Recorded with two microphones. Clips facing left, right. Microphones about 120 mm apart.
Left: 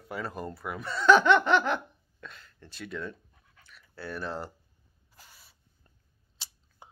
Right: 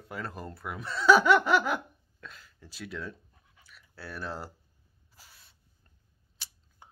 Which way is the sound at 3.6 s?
Centre (ahead or behind).